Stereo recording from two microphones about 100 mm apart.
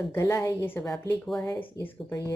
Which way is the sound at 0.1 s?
25° left (ahead or behind).